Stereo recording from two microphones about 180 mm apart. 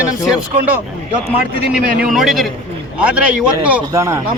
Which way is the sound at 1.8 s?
55° right (ahead or behind).